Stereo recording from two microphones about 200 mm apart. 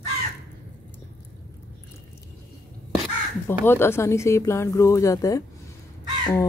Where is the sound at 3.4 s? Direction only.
10° left (ahead or behind).